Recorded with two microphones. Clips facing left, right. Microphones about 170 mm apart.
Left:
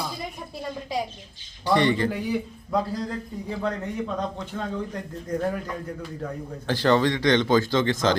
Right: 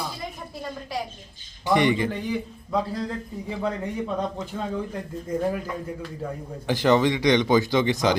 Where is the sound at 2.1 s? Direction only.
5° left (ahead or behind).